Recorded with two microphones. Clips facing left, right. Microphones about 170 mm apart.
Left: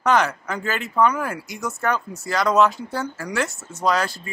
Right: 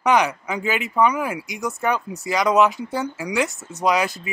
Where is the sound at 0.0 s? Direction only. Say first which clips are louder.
Right 1 dB; 15° right (ahead or behind).